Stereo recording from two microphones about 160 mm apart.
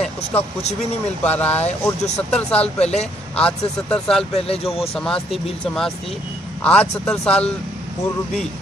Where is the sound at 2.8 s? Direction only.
40° left (ahead or behind).